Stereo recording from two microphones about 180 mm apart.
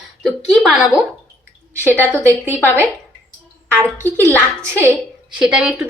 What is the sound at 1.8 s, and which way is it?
Speech, 10° left (ahead or behind).